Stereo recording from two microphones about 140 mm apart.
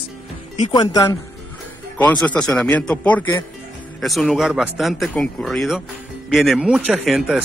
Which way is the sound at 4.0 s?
Centre (ahead or behind).